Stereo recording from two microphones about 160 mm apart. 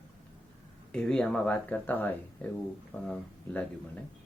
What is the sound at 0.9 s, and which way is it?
Speech, 5° left (ahead or behind).